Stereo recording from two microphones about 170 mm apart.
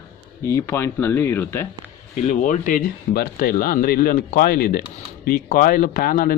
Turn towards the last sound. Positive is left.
turn(degrees=55)  # may be behind; listen again after turning